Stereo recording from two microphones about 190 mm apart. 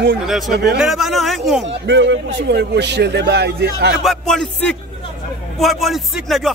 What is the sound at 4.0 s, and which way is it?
A man's voice, centre (ahead or behind).